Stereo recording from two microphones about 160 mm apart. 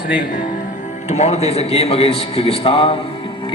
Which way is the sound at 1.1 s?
45° left (ahead or behind).